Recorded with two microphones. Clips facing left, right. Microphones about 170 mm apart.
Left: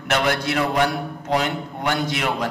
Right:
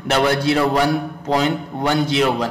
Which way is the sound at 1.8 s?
30° right (ahead or behind).